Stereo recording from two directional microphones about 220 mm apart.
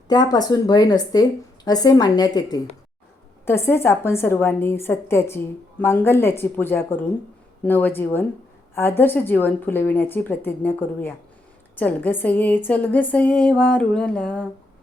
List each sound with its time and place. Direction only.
0.1 s a woman's voice: 20° left (ahead or behind)